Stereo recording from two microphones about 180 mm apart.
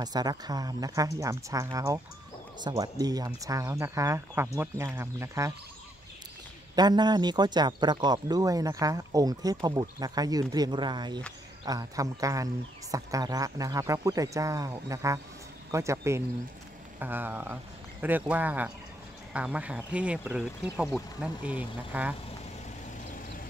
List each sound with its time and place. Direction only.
0.0 s a man's voice: 20° right (ahead or behind)
6.7 s a man's voice: 20° right (ahead or behind)